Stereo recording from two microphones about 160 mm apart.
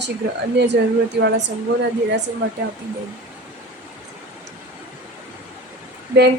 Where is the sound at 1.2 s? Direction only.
90° right.